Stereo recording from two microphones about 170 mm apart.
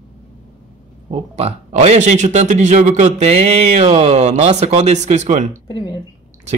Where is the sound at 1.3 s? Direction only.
35° right (ahead or behind).